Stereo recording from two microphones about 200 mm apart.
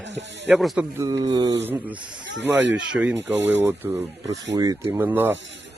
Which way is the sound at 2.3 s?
65° right (ahead or behind).